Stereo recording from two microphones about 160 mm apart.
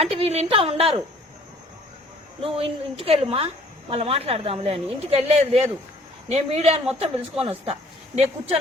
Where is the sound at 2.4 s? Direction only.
35° right (ahead or behind).